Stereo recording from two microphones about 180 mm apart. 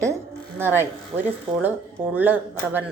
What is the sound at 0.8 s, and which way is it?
A woman's voice, 10° right (ahead or behind).